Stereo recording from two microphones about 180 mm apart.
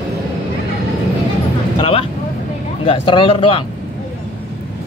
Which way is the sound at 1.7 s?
30° left (ahead or behind).